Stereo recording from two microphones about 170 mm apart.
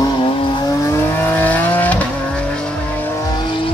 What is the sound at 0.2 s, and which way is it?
Vehicle, 30° left (ahead or behind).